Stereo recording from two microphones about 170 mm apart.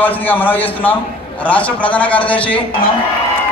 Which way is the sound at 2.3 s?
30° left (ahead or behind).